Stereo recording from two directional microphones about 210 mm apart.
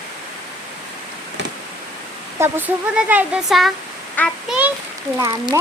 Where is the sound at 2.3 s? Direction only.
10° right (ahead or behind).